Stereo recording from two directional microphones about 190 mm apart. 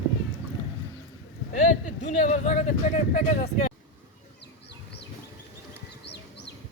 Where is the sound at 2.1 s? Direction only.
35° left (ahead or behind).